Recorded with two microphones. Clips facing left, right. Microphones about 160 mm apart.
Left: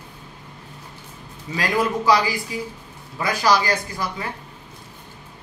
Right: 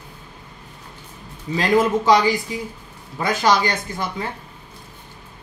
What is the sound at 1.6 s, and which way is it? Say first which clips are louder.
Speech: right 4 dB; 20° right (ahead or behind).